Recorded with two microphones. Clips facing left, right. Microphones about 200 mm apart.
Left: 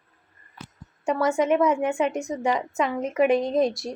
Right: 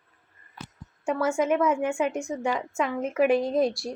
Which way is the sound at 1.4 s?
Centre (ahead or behind).